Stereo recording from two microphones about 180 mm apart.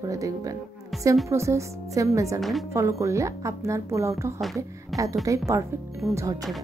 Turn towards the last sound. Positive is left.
turn(degrees=-15)  # may be behind; listen again after turning